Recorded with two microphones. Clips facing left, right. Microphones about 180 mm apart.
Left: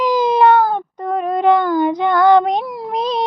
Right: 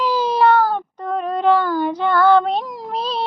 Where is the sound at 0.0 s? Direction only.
15° left (ahead or behind).